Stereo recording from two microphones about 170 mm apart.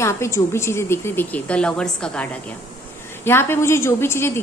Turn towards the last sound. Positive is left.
turn(degrees=15)  # may be behind; listen again after turning